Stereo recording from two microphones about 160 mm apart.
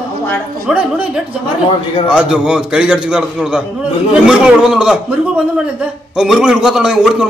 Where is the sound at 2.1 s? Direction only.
5° right (ahead or behind).